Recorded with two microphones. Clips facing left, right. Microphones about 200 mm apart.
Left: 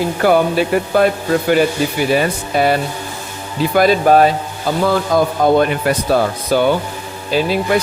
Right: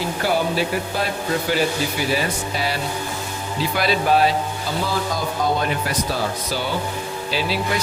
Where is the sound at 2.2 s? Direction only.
55° left (ahead or behind).